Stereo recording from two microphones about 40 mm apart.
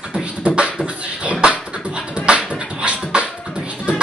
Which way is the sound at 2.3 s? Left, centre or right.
Right.